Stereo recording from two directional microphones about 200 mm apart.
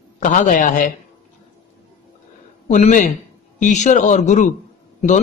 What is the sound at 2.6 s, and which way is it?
A man's voice, 35° left (ahead or behind).